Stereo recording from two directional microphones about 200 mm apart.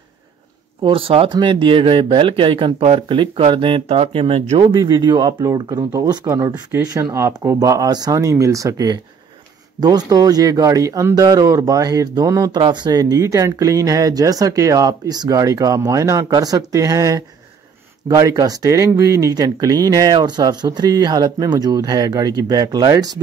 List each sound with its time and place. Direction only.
0.8 s speech: 30° right (ahead or behind)